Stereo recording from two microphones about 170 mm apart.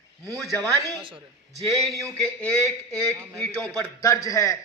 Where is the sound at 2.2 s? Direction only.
5° left (ahead or behind).